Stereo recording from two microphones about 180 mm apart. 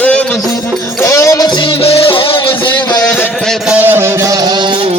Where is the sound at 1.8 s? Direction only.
35° left (ahead or behind).